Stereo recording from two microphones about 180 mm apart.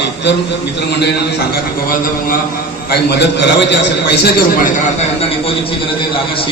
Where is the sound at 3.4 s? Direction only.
75° left (ahead or behind).